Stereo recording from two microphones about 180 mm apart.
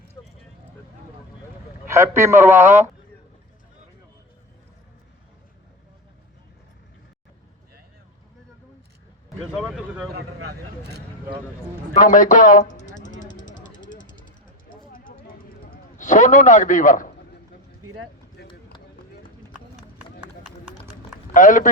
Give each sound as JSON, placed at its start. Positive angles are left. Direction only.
{"t": 1.9, "sound": "a man's voice", "side_deg": -15}
{"t": 9.6, "sound": "speech", "side_deg": 0}
{"t": 11.9, "sound": "a man's voice", "side_deg": 45}
{"t": 13.0, "sound": "a sound", "side_deg": 45}
{"t": 18.4, "sound": "run", "side_deg": 65}
{"t": 21.3, "sound": "a man's voice", "side_deg": 45}